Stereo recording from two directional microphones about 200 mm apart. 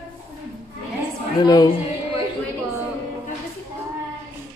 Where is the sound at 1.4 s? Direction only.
20° left (ahead or behind).